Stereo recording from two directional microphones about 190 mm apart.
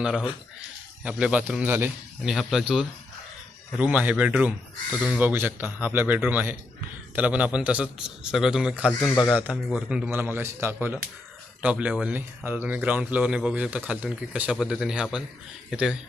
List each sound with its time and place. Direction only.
0.0 s a man's voice: 5° right (ahead or behind)
9.0 s speech: 20° left (ahead or behind)
9.3 s a man's voice: 5° right (ahead or behind)